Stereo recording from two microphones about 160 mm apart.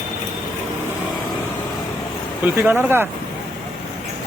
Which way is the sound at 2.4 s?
15° right (ahead or behind).